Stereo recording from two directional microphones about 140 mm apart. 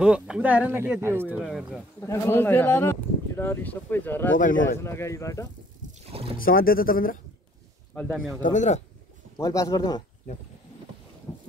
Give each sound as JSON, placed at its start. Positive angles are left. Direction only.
{"t": 0.0, "sound": "speech", "side_deg": -5}
{"t": 1.4, "sound": "speech", "side_deg": 0}
{"t": 2.0, "sound": "speech", "side_deg": 20}
{"t": 6.0, "sound": "rowboat", "side_deg": -45}
{"t": 6.4, "sound": "speech", "side_deg": 90}
{"t": 7.9, "sound": "speech", "side_deg": 10}
{"t": 8.4, "sound": "speech", "side_deg": 65}
{"t": 9.4, "sound": "speech", "side_deg": 25}